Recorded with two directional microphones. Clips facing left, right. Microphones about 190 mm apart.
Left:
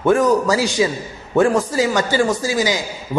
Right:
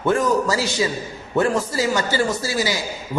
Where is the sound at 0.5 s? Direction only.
15° left (ahead or behind).